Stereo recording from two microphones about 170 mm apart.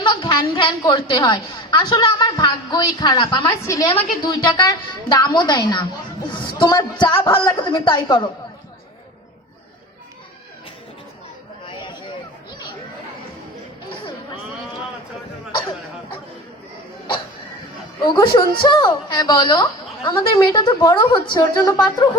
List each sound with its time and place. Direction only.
0.0 s a woman's voice: 25° left (ahead or behind)
18.0 s a woman's voice: 25° left (ahead or behind)